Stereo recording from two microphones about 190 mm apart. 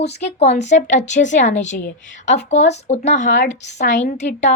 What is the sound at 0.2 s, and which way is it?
A woman's voice, 35° left (ahead or behind).